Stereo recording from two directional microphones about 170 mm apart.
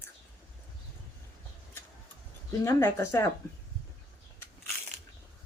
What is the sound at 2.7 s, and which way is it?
Speech, 15° left (ahead or behind).